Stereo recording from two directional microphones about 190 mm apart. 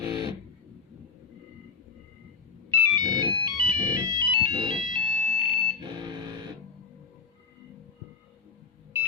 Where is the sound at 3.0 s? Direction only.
20° right (ahead or behind).